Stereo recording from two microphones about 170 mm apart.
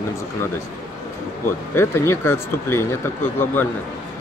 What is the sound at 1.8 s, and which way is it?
Speech, 15° left (ahead or behind).